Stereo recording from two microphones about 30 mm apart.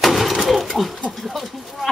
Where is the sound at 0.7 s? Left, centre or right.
Centre.